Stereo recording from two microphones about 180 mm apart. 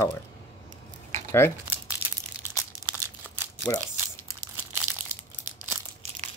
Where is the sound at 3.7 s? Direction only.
15° left (ahead or behind).